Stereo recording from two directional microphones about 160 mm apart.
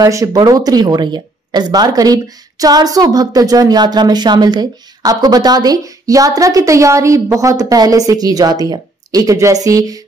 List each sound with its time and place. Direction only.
0.0 s speech: 20° right (ahead or behind)